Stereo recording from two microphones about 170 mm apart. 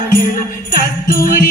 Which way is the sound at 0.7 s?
55° left (ahead or behind).